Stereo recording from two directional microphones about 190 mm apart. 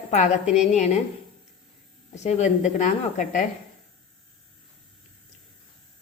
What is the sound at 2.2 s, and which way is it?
Speech, 40° left (ahead or behind).